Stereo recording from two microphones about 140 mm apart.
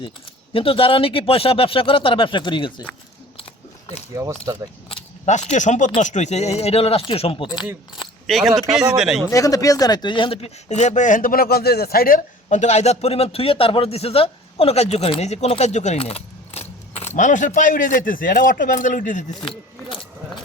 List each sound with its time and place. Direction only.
0.5 s speech: 40° left (ahead or behind)
4.1 s speech: 20° right (ahead or behind)
5.2 s speech: 55° left (ahead or behind); by 7.7 s 35° left (ahead or behind)
8.3 s speech: centre (ahead or behind)
9.3 s speech: 25° left (ahead or behind); by 19.2 s 70° left (ahead or behind)